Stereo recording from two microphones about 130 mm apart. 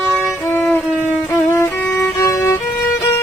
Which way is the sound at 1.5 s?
20° left (ahead or behind).